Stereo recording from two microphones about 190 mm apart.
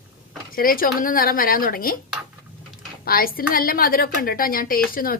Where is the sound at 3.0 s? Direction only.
50° left (ahead or behind).